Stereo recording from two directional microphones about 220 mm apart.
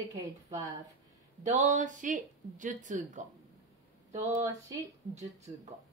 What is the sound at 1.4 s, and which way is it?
Speech, 35° right (ahead or behind).